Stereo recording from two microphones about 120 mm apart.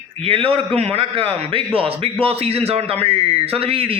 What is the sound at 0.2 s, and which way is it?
A man's voice, 50° right (ahead or behind).